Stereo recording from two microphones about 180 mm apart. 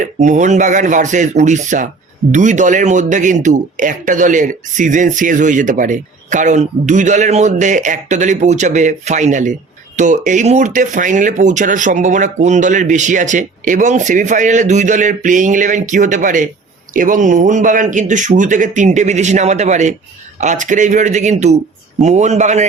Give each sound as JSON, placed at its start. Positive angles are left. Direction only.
{"t": 0.0, "sound": "speech", "side_deg": -40}